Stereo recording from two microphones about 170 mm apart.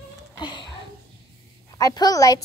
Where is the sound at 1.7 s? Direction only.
20° left (ahead or behind).